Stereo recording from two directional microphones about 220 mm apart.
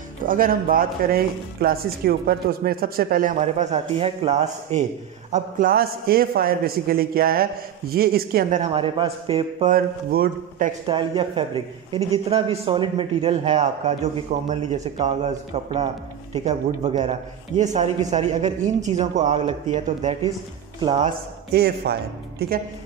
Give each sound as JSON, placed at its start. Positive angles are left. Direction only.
{"t": 0.2, "sound": "speech", "side_deg": -40}
{"t": 5.3, "sound": "a man's voice", "side_deg": -40}
{"t": 9.7, "sound": "speech", "side_deg": -40}
{"t": 10.9, "sound": "a man's voice", "side_deg": -25}
{"t": 21.5, "sound": "a man's voice", "side_deg": -45}